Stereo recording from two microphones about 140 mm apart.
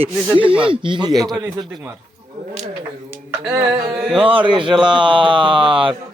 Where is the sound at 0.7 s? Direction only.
35° right (ahead or behind).